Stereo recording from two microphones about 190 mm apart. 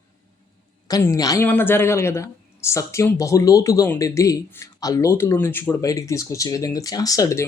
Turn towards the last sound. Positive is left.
turn(degrees=15)  # may be behind; listen again after turning